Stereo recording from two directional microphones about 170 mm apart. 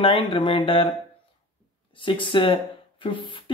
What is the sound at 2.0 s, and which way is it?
Speech, 30° left (ahead or behind).